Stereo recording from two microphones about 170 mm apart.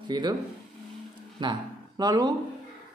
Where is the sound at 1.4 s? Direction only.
25° right (ahead or behind).